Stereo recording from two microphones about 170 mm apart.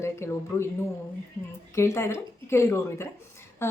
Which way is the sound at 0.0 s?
15° left (ahead or behind).